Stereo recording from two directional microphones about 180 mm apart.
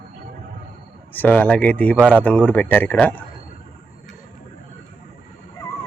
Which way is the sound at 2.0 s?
10° right (ahead or behind).